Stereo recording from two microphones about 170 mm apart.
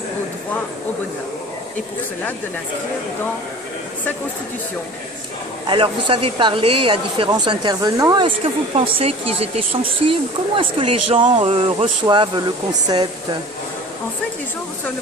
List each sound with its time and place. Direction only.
5.7 s speech: 30° right (ahead or behind)
8.7 s speech: 35° right (ahead or behind)